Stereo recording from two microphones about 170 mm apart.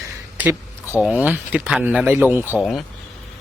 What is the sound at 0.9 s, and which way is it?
Speech, 5° right (ahead or behind).